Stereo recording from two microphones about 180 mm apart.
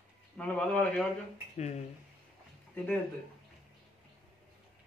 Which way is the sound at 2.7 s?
10° left (ahead or behind).